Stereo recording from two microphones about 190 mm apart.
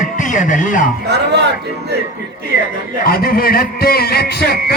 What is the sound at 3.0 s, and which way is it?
A man's voice, 50° left (ahead or behind).